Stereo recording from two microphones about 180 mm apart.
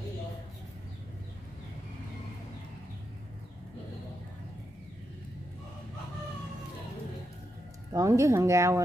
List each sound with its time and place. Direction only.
7.9 s speech: 20° right (ahead or behind)